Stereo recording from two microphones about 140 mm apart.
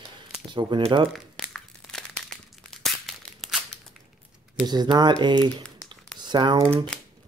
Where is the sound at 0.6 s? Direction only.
35° right (ahead or behind).